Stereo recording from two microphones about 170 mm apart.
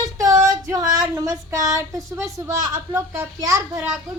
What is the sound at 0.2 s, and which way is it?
Child singing, 20° right (ahead or behind).